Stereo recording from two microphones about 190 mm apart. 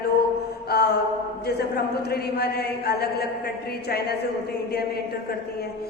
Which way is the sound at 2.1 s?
55° left (ahead or behind).